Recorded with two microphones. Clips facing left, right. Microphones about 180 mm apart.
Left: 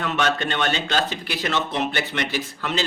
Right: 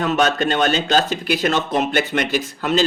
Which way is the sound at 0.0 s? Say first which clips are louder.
Right 5 dB; 40° right (ahead or behind).